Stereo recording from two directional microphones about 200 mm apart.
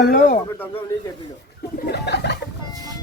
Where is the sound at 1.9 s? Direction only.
55° left (ahead or behind).